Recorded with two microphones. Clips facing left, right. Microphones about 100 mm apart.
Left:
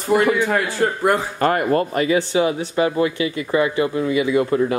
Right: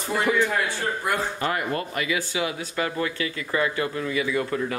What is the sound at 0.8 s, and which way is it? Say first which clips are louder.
Speech: left 9 dB; 70° left (ahead or behind).